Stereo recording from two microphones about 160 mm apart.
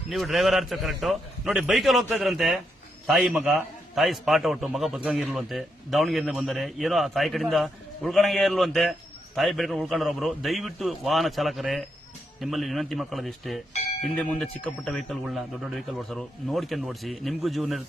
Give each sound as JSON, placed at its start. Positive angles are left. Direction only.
{"t": 0.1, "sound": "speech", "side_deg": 0}